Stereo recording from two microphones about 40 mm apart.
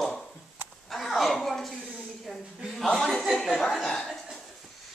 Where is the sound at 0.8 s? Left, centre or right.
Centre.